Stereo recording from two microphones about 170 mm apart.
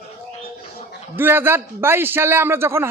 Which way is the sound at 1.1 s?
10° right (ahead or behind).